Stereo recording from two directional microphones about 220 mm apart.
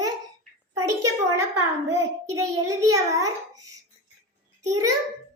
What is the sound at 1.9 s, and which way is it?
A child's voice, 15° right (ahead or behind).